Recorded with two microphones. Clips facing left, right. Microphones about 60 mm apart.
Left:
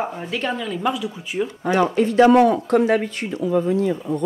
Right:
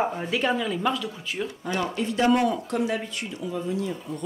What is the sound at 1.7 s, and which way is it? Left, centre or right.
Speech, left.